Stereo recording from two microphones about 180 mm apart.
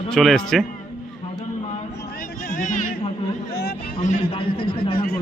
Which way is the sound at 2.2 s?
50° left (ahead or behind).